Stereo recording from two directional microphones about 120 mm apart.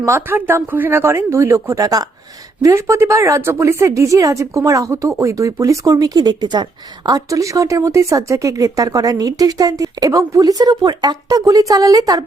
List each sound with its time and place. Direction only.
0.0 s speech: 20° right (ahead or behind)